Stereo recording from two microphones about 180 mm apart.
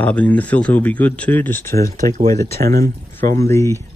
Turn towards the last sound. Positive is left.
turn(degrees=15)  # may be behind; listen again after turning